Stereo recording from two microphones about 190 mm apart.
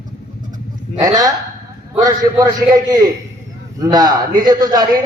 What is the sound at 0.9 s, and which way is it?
A man's voice, 20° right (ahead or behind).